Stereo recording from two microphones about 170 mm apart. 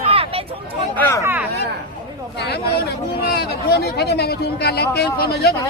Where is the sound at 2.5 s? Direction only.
70° left (ahead or behind).